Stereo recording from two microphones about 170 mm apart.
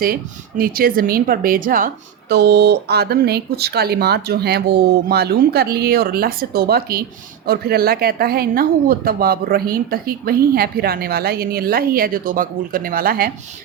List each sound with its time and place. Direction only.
0.0 s speech: 60° right (ahead or behind)
2.3 s speech: 75° right (ahead or behind)